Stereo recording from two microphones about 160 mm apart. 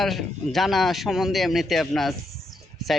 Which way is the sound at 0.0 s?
Centre (ahead or behind).